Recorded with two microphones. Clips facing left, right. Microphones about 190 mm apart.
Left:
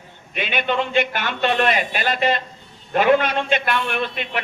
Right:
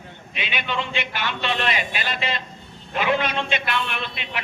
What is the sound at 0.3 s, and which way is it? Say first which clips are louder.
A man's voice: left 6 dB; 50° left (ahead or behind).